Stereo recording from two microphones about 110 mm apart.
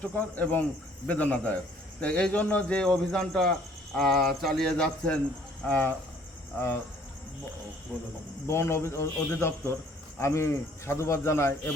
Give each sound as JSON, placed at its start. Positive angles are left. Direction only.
{"t": 0.0, "sound": "speech", "side_deg": 15}
{"t": 7.9, "sound": "speech", "side_deg": 5}
{"t": 8.4, "sound": "speech", "side_deg": 25}